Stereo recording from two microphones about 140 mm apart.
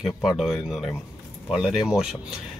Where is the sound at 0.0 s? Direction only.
5° right (ahead or behind).